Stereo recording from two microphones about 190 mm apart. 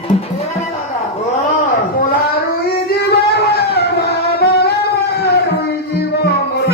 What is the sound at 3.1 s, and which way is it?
Music, 60° left (ahead or behind).